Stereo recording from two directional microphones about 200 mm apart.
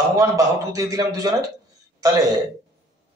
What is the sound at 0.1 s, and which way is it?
A man's voice, 15° right (ahead or behind).